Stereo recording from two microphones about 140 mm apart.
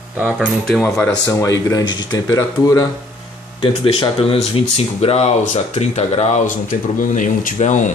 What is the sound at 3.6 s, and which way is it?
Speech, 40° left (ahead or behind).